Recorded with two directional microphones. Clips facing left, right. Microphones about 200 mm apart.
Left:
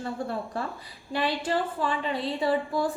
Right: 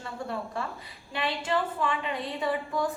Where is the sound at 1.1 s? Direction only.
35° left (ahead or behind).